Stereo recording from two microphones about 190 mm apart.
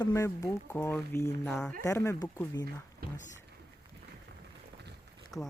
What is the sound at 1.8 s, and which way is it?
Speech, 15° left (ahead or behind).